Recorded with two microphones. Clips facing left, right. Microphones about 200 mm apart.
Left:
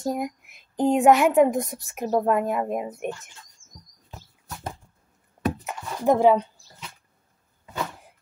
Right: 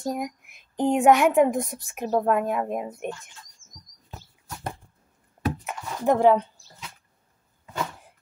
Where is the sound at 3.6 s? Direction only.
10° left (ahead or behind).